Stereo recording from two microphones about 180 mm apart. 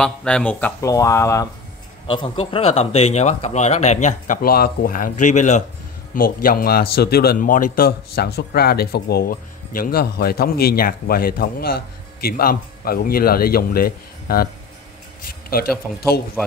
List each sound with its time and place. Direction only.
0.0 s speech: 5° left (ahead or behind)
2.0 s speech: 30° left (ahead or behind)
6.1 s speech: 55° left (ahead or behind)